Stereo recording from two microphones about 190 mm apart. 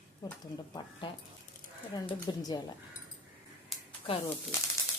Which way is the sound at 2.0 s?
20° left (ahead or behind).